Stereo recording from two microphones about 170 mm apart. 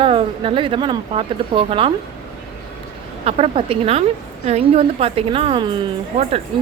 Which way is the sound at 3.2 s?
35° right (ahead or behind).